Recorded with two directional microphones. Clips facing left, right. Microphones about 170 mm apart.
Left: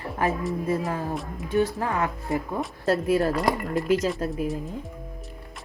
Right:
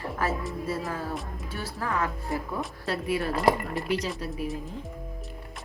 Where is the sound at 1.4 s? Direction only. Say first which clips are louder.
Left 11 dB; 20° left (ahead or behind).